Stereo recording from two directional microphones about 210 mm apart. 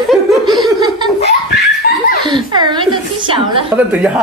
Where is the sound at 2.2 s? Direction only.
20° right (ahead or behind).